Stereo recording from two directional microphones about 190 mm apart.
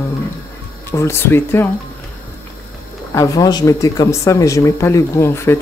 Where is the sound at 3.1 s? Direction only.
15° left (ahead or behind).